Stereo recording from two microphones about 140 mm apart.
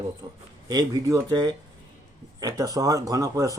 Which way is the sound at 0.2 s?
25° right (ahead or behind).